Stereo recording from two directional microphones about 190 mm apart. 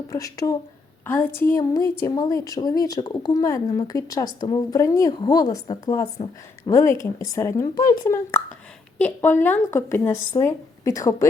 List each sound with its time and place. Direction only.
0.1 s a woman's voice: 20° left (ahead or behind)